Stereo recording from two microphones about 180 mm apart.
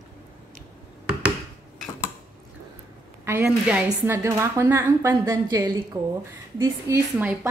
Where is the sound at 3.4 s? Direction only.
5° right (ahead or behind).